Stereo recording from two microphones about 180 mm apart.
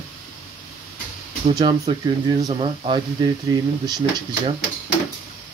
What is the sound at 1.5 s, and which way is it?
Speech, 25° right (ahead or behind).